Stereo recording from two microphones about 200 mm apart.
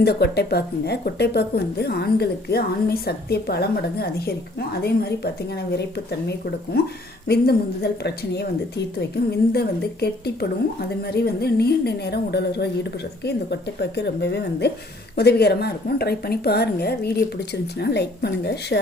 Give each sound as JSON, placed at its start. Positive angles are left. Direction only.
{"t": 0.0, "sound": "a woman's voice", "side_deg": 55}